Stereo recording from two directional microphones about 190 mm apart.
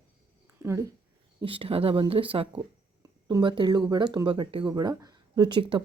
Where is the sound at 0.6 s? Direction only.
15° right (ahead or behind).